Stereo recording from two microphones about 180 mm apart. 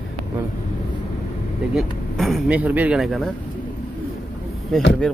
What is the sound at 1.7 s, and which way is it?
Speech, centre (ahead or behind).